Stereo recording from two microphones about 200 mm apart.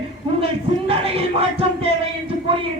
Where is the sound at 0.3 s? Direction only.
30° right (ahead or behind).